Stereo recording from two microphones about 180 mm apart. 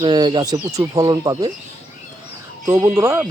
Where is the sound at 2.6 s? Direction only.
15° right (ahead or behind).